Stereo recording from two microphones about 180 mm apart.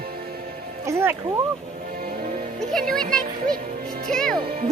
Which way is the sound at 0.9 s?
15° right (ahead or behind).